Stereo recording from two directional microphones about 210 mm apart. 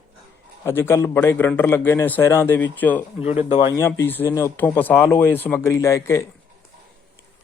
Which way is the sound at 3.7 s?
10° left (ahead or behind).